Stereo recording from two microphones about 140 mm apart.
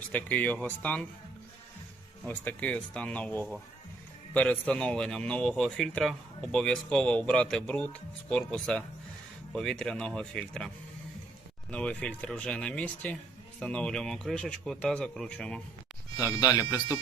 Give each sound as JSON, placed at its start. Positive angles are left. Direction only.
{"t": 0.1, "sound": "speech", "side_deg": 10}
{"t": 2.2, "sound": "a man's voice", "side_deg": 10}
{"t": 11.7, "sound": "a man's voice", "side_deg": 10}
{"t": 16.6, "sound": "speech", "side_deg": 25}